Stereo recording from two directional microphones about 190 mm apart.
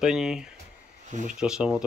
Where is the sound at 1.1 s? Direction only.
40° right (ahead or behind).